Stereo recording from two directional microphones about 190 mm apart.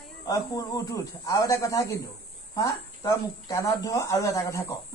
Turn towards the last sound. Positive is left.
turn(degrees=15)  # may be behind; listen again after turning